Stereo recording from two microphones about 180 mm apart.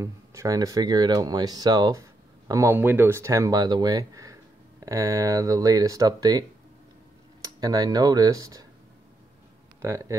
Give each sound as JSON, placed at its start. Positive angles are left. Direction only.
{"t": 0.0, "sound": "speech", "side_deg": -15}
{"t": 7.4, "sound": "speech", "side_deg": -20}
{"t": 9.8, "sound": "speech", "side_deg": -15}